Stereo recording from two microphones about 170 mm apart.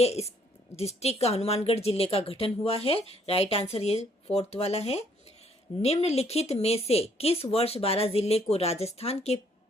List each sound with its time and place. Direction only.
0.0 s a woman's voice: 40° left (ahead or behind)